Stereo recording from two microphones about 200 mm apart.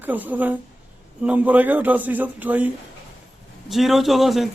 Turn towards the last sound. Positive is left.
turn(degrees=0)  # may be behind; listen again after turning